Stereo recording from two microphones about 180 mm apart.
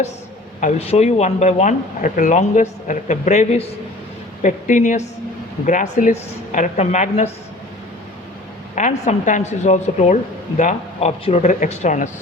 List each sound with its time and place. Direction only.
0.6 s a woman's voice: 35° left (ahead or behind)
8.7 s a woman's voice: 45° left (ahead or behind)